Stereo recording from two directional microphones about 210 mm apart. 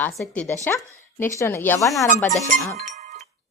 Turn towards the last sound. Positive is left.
turn(degrees=-35)  # may be behind; listen again after turning